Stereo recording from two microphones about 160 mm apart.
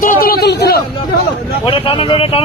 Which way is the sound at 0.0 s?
60° left (ahead or behind).